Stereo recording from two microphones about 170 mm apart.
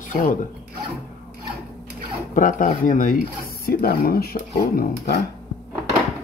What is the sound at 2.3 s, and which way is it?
Speech, 50° left (ahead or behind).